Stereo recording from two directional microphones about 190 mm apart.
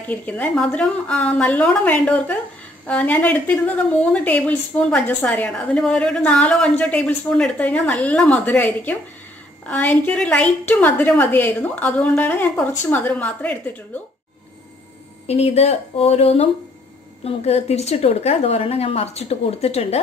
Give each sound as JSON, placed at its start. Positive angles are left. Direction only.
{"t": 0.1, "sound": "a woman's voice", "side_deg": 10}
{"t": 15.2, "sound": "a woman's voice", "side_deg": 35}